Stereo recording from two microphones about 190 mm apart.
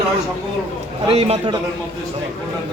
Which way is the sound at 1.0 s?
30° right (ahead or behind).